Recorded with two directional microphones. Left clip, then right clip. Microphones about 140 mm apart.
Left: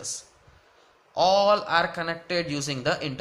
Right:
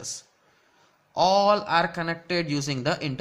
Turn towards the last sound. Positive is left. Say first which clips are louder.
# even
turn(degrees=-35)  # may be behind; listen again after turning